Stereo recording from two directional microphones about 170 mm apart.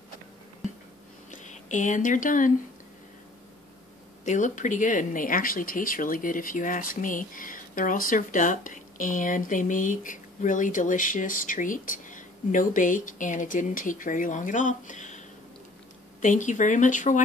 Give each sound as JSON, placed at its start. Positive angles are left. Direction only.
{"t": 1.3, "sound": "speech", "side_deg": 45}
{"t": 4.2, "sound": "speech", "side_deg": 45}